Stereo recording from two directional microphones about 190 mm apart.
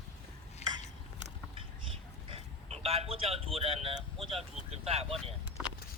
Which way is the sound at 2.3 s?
30° right (ahead or behind).